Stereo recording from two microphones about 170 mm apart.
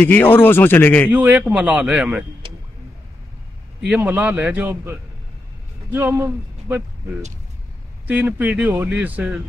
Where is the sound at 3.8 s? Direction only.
10° right (ahead or behind).